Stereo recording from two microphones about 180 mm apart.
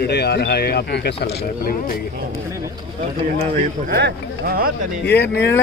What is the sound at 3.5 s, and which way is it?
Speech, 65° right (ahead or behind).